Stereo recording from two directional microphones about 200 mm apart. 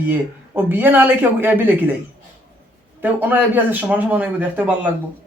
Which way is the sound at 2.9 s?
10° right (ahead or behind).